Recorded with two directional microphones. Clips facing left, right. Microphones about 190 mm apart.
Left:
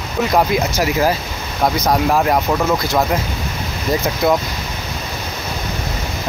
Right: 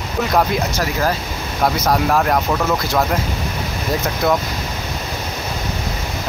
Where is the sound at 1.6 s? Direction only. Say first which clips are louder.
Left 1 dB; centre (ahead or behind).